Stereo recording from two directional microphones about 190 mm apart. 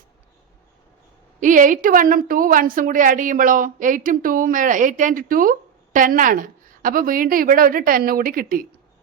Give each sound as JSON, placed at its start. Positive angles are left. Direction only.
{"t": 1.4, "sound": "a woman's voice", "side_deg": -45}